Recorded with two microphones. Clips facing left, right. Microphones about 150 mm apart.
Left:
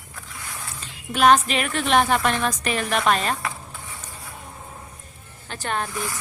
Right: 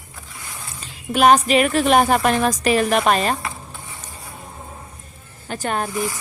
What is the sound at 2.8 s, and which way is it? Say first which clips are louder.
Speech: right 5 dB; 30° right (ahead or behind).